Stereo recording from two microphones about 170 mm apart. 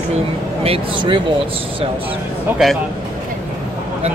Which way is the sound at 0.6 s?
35° right (ahead or behind).